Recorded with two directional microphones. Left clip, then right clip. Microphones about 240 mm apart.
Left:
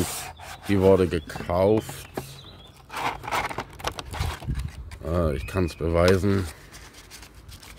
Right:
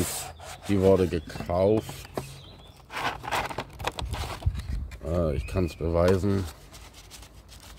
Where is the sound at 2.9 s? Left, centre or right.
Centre.